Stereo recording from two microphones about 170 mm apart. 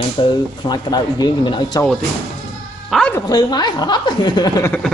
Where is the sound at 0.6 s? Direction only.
25° left (ahead or behind).